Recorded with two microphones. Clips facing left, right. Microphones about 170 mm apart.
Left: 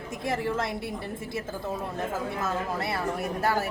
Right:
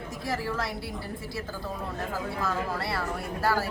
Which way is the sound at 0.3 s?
25° left (ahead or behind).